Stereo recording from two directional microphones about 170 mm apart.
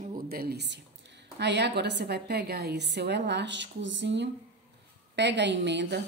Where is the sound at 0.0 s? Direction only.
60° right (ahead or behind).